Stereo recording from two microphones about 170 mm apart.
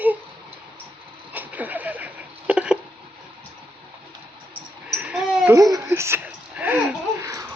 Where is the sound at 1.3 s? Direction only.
10° right (ahead or behind).